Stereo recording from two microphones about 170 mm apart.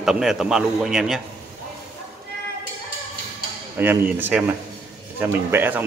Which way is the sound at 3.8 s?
10° right (ahead or behind).